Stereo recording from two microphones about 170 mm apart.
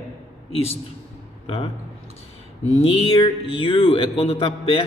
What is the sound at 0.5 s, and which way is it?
Speech, 35° left (ahead or behind).